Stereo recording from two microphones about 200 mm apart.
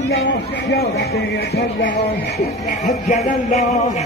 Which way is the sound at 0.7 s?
55° left (ahead or behind).